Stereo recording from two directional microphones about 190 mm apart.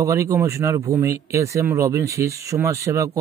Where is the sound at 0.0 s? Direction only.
15° right (ahead or behind).